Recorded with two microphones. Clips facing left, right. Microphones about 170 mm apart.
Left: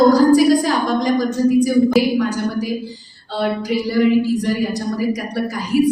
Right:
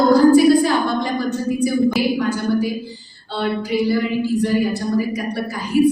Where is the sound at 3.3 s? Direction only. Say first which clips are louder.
Left 1 dB; 40° left (ahead or behind).